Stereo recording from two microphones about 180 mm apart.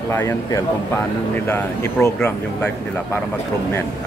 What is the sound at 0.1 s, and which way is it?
Speech, 15° left (ahead or behind).